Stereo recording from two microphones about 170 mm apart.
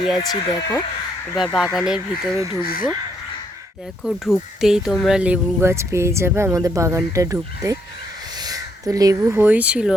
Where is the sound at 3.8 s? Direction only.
Centre (ahead or behind).